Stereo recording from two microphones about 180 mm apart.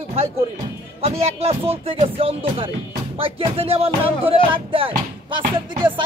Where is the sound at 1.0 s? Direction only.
35° right (ahead or behind).